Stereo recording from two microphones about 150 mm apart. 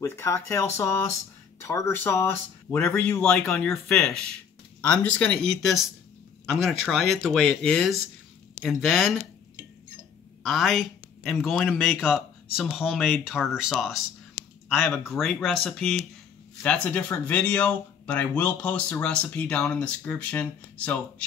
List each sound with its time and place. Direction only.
0.0 s speech: 20° left (ahead or behind); by 9.1 s centre (ahead or behind)
10.4 s speech: centre (ahead or behind)